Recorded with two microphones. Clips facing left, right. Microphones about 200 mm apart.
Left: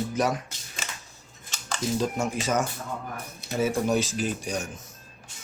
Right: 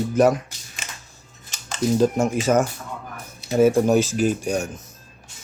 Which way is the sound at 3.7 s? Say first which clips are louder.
Right 7 dB; 45° right (ahead or behind).